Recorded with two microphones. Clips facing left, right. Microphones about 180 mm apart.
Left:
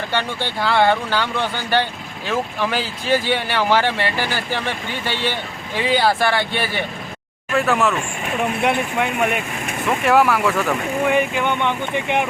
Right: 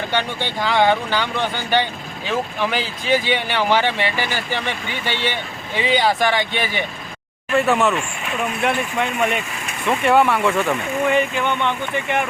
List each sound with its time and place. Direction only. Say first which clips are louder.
0.1 s speech: even; 15° right (ahead or behind)
7.5 s speech: right 1 dB; centre (ahead or behind)
8.6 s speech: even; 10° left (ahead or behind)